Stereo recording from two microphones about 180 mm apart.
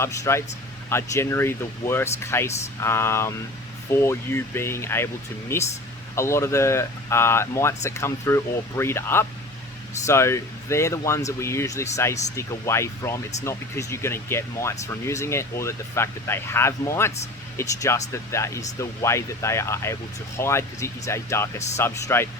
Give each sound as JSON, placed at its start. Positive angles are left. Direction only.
{"t": 0.0, "sound": "speech", "side_deg": 15}